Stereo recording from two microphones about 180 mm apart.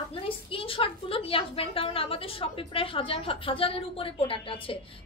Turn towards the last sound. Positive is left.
turn(degrees=30)  # may be behind; listen again after turning